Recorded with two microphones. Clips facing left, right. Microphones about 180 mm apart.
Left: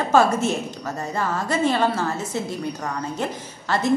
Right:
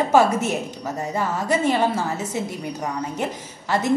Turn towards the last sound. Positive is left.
turn(degrees=-15)  # may be behind; listen again after turning